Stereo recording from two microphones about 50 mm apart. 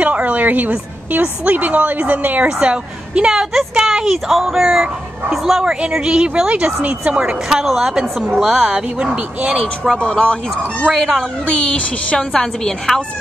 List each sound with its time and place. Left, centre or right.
0.0 s a sound: right
1.2 s a woman's voice: right
2.4 s a woman's voice: right
7.4 s a woman's voice: centre
8.7 s a woman's voice: centre
9.9 s speech: left
10.9 s speech: centre
11.4 s speech: left
12.2 s a woman's voice: centre